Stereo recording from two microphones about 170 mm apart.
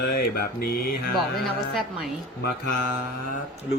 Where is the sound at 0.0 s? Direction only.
65° left (ahead or behind).